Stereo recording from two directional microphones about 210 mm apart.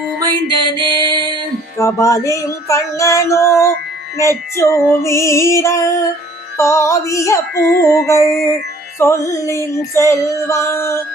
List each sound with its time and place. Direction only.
0.2 s mantra: 20° right (ahead or behind)
1.8 s female singing: 15° left (ahead or behind)